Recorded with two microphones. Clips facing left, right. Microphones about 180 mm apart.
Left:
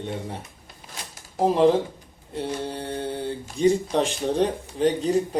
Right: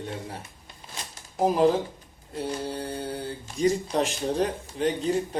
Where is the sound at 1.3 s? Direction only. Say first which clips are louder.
Left 3 dB; 30° left (ahead or behind).